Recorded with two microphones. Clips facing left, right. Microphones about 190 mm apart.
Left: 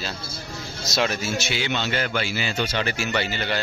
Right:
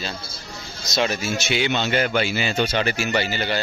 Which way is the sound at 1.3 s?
20° right (ahead or behind).